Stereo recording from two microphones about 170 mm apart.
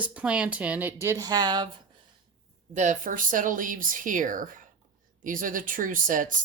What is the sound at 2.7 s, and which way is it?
Speech, 45° right (ahead or behind).